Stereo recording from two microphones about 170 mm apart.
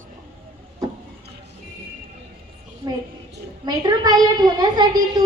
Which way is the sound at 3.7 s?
25° right (ahead or behind).